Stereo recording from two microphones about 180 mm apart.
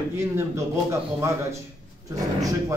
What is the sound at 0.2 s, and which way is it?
Speech, 15° right (ahead or behind).